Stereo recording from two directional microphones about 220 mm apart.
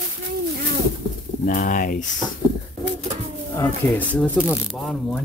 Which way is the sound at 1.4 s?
35° left (ahead or behind).